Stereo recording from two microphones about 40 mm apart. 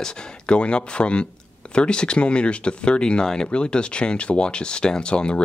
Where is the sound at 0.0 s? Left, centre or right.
Left.